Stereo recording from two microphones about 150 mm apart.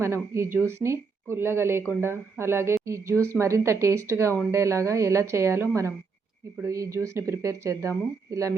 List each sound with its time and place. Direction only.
0.0 s a woman's voice: 15° right (ahead or behind)